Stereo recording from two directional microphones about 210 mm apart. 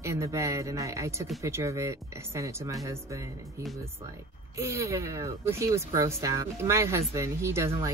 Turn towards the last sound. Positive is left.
turn(degrees=-15)  # may be behind; listen again after turning